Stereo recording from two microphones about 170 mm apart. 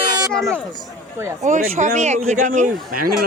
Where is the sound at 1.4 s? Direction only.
45° right (ahead or behind).